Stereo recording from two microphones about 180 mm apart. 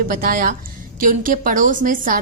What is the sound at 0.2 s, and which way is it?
A woman's voice, 50° right (ahead or behind).